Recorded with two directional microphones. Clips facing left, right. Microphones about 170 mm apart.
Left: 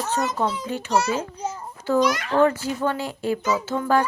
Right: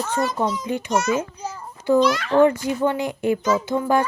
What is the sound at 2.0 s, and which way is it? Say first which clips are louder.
Speech: even; 15° left (ahead or behind).